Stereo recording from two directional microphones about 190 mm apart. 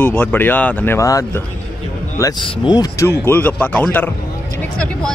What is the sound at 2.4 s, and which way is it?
Speech, 25° left (ahead or behind).